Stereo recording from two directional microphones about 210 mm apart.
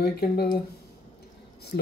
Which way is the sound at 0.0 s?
50° left (ahead or behind).